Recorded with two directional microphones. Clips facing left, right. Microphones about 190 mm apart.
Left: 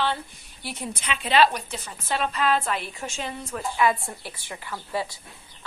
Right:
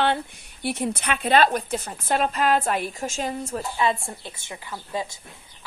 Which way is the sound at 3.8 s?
25° right (ahead or behind).